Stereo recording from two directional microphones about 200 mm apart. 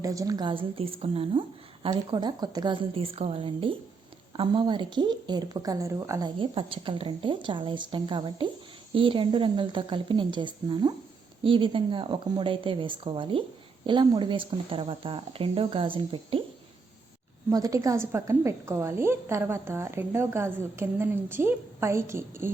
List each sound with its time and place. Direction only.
0.0 s speech: 15° right (ahead or behind)
17.5 s a woman's voice: 15° right (ahead or behind)